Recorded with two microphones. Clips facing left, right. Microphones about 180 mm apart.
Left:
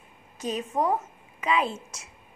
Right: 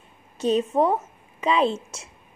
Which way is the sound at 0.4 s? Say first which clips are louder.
Right 7 dB; 30° right (ahead or behind).